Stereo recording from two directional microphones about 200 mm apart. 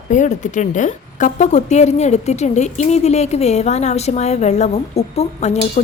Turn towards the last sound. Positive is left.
turn(degrees=35)  # may be behind; listen again after turning